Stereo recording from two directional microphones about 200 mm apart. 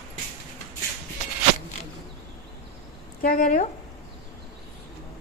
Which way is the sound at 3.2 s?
45° left (ahead or behind).